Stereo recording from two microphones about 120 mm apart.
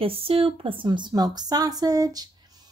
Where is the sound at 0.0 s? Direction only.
50° right (ahead or behind).